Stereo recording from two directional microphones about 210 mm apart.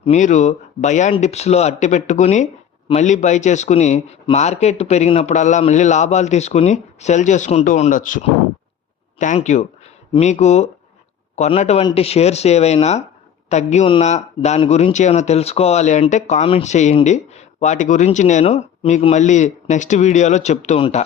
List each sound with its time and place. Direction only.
0.0 s speech: 35° left (ahead or behind)